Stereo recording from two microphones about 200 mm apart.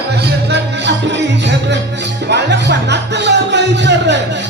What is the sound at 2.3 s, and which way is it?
Music, 60° right (ahead or behind).